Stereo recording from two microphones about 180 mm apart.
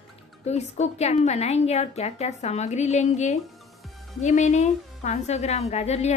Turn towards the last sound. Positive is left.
turn(degrees=35)  # may be behind; listen again after turning